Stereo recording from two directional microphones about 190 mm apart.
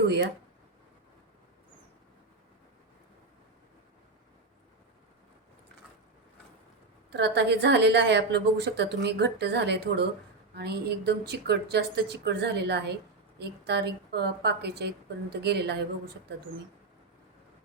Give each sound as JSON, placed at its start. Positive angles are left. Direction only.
{"t": 7.1, "sound": "a woman's voice", "side_deg": -60}